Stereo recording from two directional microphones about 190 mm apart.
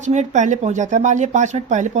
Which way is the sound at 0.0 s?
40° right (ahead or behind).